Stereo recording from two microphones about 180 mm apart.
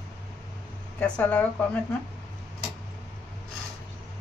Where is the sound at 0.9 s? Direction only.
5° left (ahead or behind).